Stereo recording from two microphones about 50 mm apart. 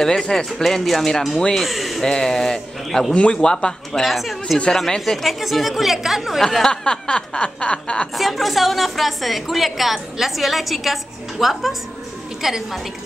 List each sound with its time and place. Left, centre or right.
0.0 s speech: centre
2.0 s speech: centre
4.0 s a woman's voice: centre
6.4 s speech: centre
8.2 s a woman's voice: centre